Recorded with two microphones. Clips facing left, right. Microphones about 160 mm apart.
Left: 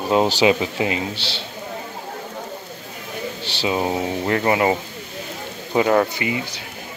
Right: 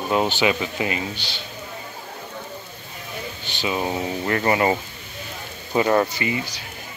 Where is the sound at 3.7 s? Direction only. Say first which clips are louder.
Left 3 dB; 20° left (ahead or behind).